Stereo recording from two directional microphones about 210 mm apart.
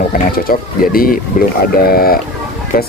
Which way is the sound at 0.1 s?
45° left (ahead or behind).